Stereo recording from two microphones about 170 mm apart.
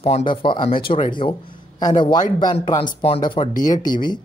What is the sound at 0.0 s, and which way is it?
Speech, 35° left (ahead or behind).